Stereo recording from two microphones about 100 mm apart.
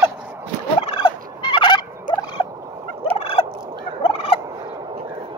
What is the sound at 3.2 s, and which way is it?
Fowl, 70° left (ahead or behind).